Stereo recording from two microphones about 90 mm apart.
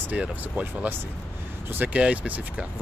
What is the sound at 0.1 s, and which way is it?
Speech, 15° right (ahead or behind).